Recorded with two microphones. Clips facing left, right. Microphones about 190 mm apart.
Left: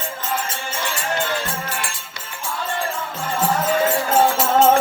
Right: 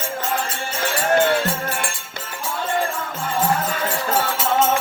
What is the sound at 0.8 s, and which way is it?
Music, 55° right (ahead or behind).